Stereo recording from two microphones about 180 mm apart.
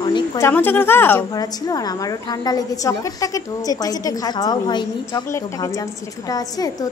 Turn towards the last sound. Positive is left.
turn(degrees=20)  # may be behind; listen again after turning